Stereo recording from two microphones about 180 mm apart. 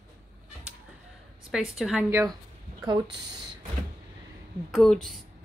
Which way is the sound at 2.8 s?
25° right (ahead or behind).